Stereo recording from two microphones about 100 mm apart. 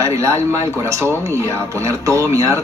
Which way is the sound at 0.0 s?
30° right (ahead or behind).